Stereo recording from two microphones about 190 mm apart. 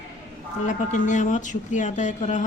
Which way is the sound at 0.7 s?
40° left (ahead or behind).